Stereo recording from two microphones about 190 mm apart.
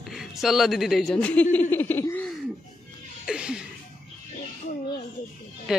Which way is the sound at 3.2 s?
5° right (ahead or behind).